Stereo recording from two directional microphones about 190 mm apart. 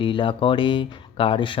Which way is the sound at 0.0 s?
25° left (ahead or behind).